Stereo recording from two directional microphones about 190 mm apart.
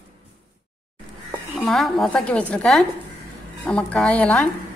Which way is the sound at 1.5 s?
Centre (ahead or behind).